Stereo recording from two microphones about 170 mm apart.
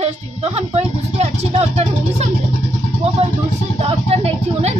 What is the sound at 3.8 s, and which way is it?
Speech, 35° right (ahead or behind).